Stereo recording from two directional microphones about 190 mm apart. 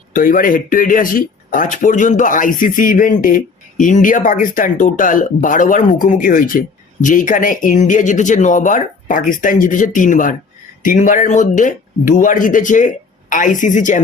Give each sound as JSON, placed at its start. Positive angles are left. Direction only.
{"t": 0.1, "sound": "a woman's voice", "side_deg": 45}